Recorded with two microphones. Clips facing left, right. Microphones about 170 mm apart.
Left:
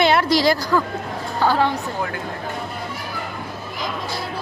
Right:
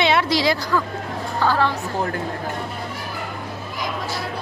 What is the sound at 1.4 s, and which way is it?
Speech, 15° left (ahead or behind).